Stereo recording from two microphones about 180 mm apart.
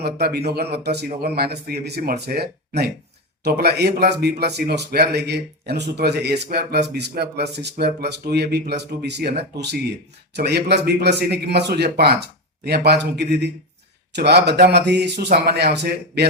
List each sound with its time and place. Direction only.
0.0 s a man's voice: 60° right (ahead or behind)
10.3 s a man's voice: 65° right (ahead or behind)